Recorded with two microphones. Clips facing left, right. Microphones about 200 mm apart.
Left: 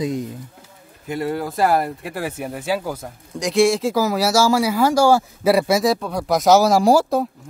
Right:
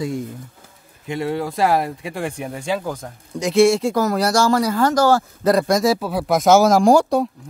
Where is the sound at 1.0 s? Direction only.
Centre (ahead or behind).